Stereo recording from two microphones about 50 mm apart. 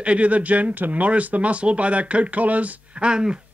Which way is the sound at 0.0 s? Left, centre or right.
Right.